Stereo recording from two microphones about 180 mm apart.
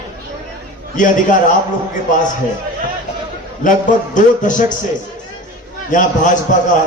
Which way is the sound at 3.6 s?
45° left (ahead or behind).